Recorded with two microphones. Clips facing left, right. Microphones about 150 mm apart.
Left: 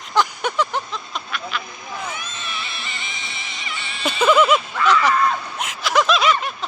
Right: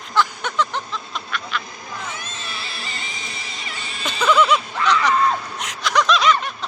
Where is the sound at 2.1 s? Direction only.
35° right (ahead or behind).